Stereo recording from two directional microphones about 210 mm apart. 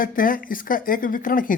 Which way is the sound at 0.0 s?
40° left (ahead or behind).